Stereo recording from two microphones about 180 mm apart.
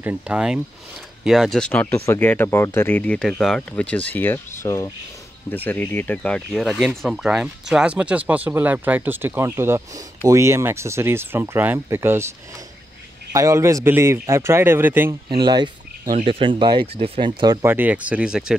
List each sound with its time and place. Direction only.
0.0 s speech: 10° right (ahead or behind)
13.3 s speech: 15° right (ahead or behind)
15.2 s speech: 25° right (ahead or behind); by 18.6 s 5° right (ahead or behind)